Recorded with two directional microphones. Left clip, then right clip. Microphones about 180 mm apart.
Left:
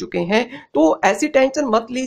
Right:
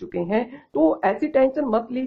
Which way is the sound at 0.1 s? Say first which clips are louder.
Left 5 dB; 35° left (ahead or behind).